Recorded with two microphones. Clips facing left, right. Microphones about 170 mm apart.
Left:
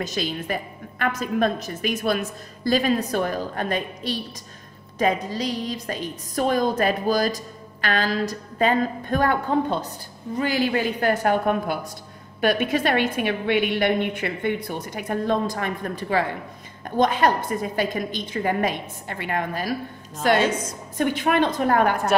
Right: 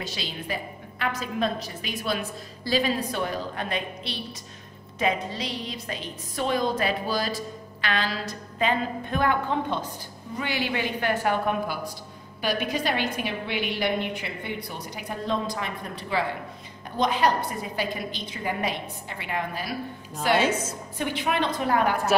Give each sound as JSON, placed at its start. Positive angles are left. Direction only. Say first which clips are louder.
{"t": 0.0, "sound": "a woman's voice", "louder": "left 7 dB", "side_deg": 45}
{"t": 20.3, "sound": "a woman's voice", "louder": "left 1 dB", "side_deg": -10}
{"t": 21.0, "sound": "a woman's voice", "louder": "left 6 dB", "side_deg": 50}